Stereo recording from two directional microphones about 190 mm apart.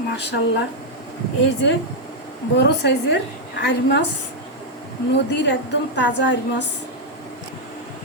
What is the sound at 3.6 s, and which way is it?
Speech, 65° left (ahead or behind).